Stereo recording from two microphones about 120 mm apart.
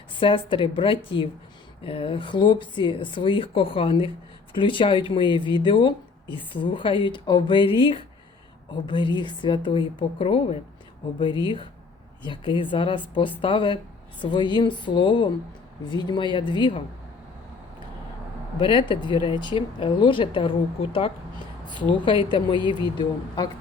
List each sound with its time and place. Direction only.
0.2 s a woman's voice: 45° left (ahead or behind)
18.6 s speech: 45° left (ahead or behind)
22.0 s a woman's voice: 40° left (ahead or behind)